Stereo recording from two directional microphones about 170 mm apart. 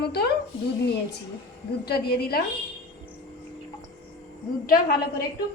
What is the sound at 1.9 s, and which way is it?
Speech, 65° left (ahead or behind).